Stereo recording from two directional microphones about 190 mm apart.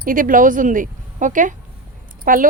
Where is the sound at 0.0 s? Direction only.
45° right (ahead or behind).